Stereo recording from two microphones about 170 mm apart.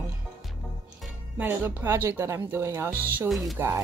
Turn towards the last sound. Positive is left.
turn(degrees=0)  # may be behind; listen again after turning